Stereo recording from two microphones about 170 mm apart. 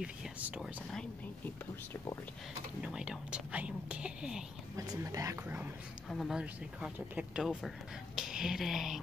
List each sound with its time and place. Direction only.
0.0 s speech: 5° right (ahead or behind)
2.8 s speech: 5° right (ahead or behind)
4.7 s speech: 20° right (ahead or behind)
6.0 s speech: centre (ahead or behind)